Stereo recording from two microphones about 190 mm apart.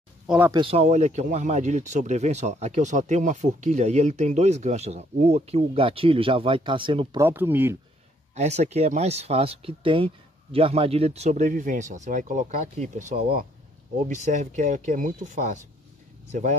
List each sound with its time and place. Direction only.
0.5 s speech: 30° right (ahead or behind)
7.2 s speech: 10° right (ahead or behind)
8.4 s speech: 35° right (ahead or behind)